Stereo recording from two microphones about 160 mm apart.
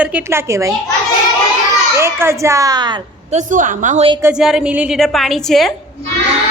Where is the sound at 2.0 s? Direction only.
15° right (ahead or behind).